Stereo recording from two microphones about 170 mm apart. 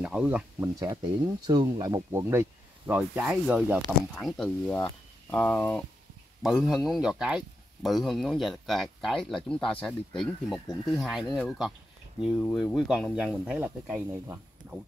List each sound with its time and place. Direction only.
0.0 s speech: 10° right (ahead or behind)
0.7 s speech: 25° right (ahead or behind)